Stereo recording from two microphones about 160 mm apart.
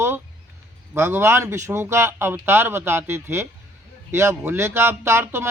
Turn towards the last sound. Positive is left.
turn(degrees=-15)  # may be behind; listen again after turning